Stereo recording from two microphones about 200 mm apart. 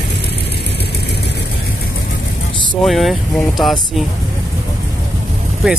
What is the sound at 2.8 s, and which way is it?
Speech, centre (ahead or behind).